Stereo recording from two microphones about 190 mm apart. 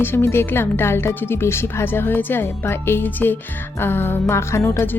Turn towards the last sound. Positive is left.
turn(degrees=15)  # may be behind; listen again after turning